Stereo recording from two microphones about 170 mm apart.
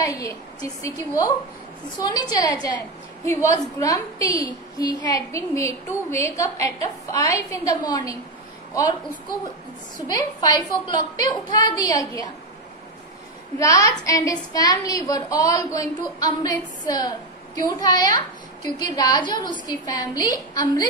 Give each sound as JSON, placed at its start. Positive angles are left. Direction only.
{"t": 0.0, "sound": "a woman's voice", "side_deg": 20}
{"t": 9.9, "sound": "a woman's voice", "side_deg": 25}
{"t": 13.6, "sound": "a woman's voice", "side_deg": 20}